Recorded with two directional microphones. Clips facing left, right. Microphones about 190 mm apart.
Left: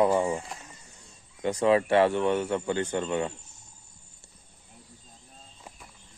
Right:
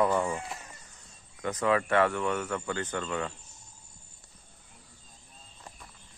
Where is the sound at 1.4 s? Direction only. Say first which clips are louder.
Left 5 dB; 25° left (ahead or behind).